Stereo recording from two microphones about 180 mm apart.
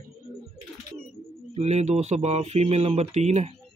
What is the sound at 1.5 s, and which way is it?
Speech, 35° right (ahead or behind).